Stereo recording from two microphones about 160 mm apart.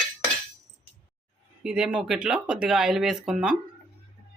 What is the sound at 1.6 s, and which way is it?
Speech, 5° right (ahead or behind).